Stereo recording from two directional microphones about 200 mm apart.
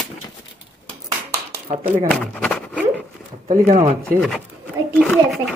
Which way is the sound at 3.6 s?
40° right (ahead or behind).